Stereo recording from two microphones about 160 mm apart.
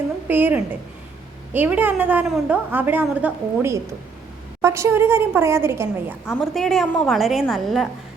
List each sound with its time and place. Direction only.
0.3 s a woman's voice: 10° right (ahead or behind)
6.2 s a woman's voice: 5° left (ahead or behind)